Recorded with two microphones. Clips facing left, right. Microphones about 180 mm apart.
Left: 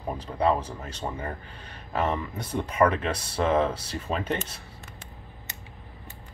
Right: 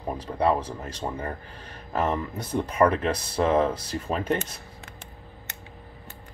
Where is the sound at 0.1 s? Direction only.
10° right (ahead or behind).